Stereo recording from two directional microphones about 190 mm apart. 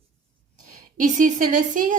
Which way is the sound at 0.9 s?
40° right (ahead or behind).